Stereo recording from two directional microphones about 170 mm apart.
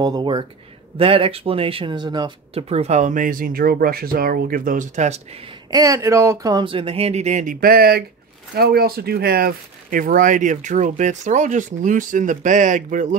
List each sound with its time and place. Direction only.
0.0 s speech: 25° right (ahead or behind); by 5.4 s 40° right (ahead or behind)
5.7 s speech: 20° right (ahead or behind); by 13.2 s 45° right (ahead or behind)